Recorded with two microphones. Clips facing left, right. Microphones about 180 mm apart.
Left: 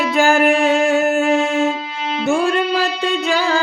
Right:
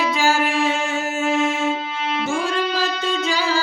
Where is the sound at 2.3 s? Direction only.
60° left (ahead or behind).